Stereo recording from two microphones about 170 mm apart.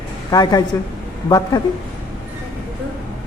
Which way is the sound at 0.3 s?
20° left (ahead or behind).